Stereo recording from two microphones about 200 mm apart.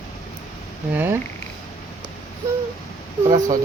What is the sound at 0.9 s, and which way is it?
Speech, 10° right (ahead or behind).